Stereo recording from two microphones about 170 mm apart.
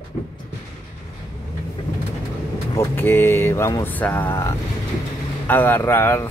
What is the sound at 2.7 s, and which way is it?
Speech, 10° left (ahead or behind).